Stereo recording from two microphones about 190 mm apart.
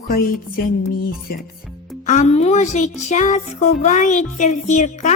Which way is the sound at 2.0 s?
35° left (ahead or behind).